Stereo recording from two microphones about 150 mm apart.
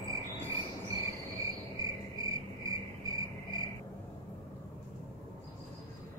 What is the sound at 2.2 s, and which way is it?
Cricket, 25° right (ahead or behind).